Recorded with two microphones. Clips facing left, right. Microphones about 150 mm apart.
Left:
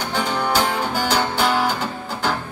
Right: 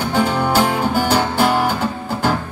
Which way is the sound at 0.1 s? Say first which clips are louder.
Right 4 dB; 40° right (ahead or behind).